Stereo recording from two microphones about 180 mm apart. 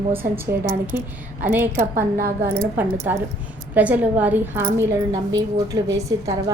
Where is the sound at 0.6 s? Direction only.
50° right (ahead or behind).